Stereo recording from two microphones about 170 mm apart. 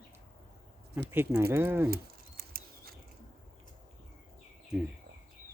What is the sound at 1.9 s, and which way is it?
Bird, 60° right (ahead or behind).